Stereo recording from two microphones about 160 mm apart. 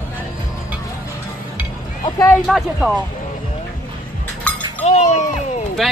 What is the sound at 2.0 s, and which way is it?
Speech, 25° left (ahead or behind).